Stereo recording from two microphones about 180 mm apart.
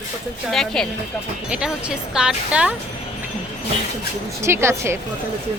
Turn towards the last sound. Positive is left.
turn(degrees=-15)  # may be behind; listen again after turning